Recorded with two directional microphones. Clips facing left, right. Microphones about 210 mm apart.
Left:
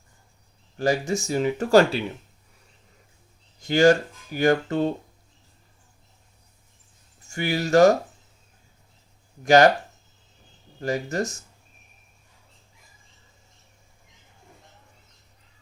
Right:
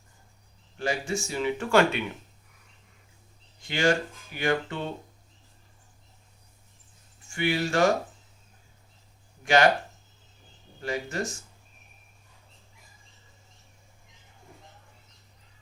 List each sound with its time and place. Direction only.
0.8 s speech: 40° left (ahead or behind)
3.6 s speech: 40° left (ahead or behind)
7.3 s speech: 40° left (ahead or behind)
9.4 s speech: 40° left (ahead or behind)
10.8 s speech: 40° left (ahead or behind)